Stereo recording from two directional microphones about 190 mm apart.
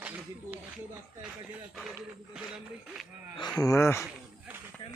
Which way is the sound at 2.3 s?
5° right (ahead or behind).